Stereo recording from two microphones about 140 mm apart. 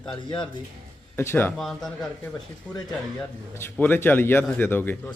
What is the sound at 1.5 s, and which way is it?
Speech, centre (ahead or behind).